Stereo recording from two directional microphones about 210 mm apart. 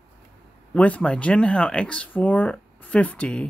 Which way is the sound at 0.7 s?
5° left (ahead or behind).